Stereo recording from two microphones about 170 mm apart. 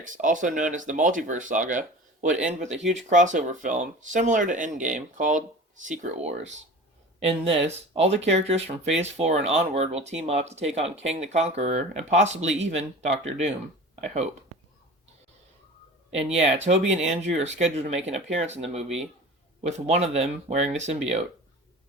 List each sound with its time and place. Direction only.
0.0 s speech: 50° right (ahead or behind)
16.6 s speech: 40° right (ahead or behind)